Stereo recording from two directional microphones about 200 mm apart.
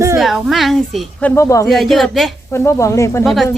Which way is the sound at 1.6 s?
Centre (ahead or behind).